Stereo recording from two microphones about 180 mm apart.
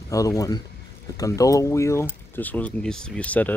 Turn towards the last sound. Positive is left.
turn(degrees=10)  # may be behind; listen again after turning